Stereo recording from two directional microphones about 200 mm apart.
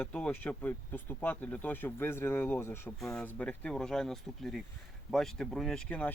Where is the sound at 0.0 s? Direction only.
5° left (ahead or behind).